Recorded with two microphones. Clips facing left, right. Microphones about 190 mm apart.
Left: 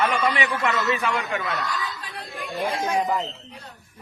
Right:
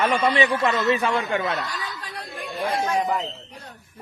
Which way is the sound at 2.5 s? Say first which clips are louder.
Right 1 dB; 15° left (ahead or behind).